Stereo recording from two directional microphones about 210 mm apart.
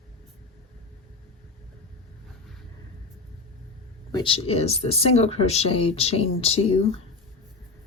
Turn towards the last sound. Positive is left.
turn(degrees=30)  # may be behind; listen again after turning